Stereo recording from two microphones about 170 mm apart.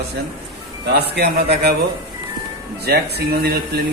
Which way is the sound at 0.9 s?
70° right (ahead or behind).